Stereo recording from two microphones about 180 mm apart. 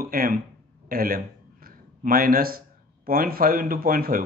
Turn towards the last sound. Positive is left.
turn(degrees=-55)  # may be behind; listen again after turning